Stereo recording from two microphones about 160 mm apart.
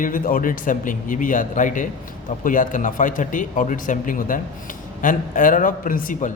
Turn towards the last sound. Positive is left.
turn(degrees=60)  # may be behind; listen again after turning